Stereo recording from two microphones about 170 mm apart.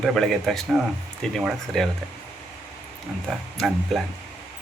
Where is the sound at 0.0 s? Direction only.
Centre (ahead or behind).